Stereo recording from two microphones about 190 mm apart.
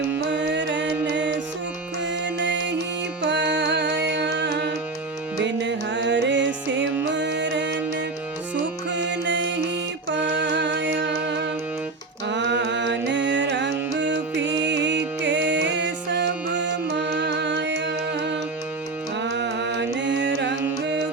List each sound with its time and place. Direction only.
0.3 s music: 70° right (ahead or behind)
8.9 s music: 70° right (ahead or behind)